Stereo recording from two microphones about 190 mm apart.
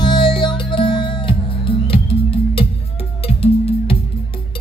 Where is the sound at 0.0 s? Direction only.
25° left (ahead or behind).